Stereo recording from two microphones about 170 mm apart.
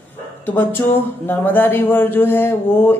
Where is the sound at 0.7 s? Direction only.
10° left (ahead or behind).